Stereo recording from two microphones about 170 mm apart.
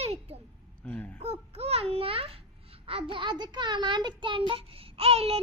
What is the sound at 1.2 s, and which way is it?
A child's voice, 35° right (ahead or behind).